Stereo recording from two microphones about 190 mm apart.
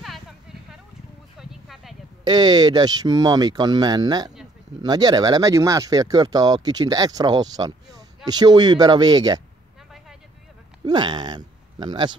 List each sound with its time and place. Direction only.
0.0 s a sound: centre (ahead or behind)
2.2 s speech: 20° right (ahead or behind)
10.9 s speech: 25° right (ahead or behind)